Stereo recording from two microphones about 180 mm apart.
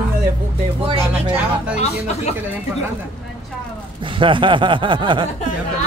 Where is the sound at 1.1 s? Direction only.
10° right (ahead or behind).